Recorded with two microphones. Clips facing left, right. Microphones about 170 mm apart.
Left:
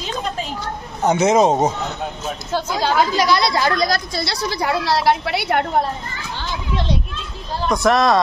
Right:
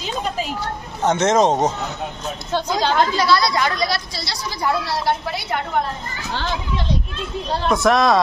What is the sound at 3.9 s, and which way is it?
A woman's voice, 55° left (ahead or behind).